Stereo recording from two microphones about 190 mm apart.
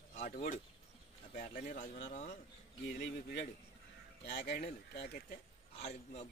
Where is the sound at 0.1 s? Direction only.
50° left (ahead or behind).